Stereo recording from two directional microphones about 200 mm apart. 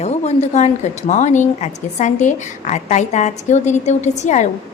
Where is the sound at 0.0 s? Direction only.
35° left (ahead or behind).